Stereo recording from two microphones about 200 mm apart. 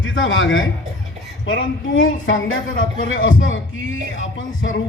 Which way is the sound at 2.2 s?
75° left (ahead or behind).